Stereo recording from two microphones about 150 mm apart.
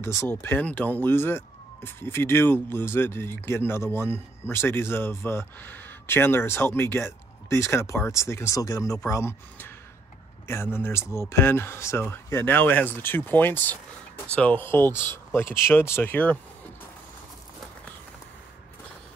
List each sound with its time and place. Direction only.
0.0 s speech: 15° left (ahead or behind)